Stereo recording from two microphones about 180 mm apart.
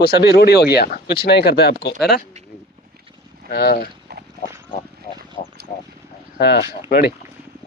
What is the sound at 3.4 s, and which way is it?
Speech, 60° left (ahead or behind).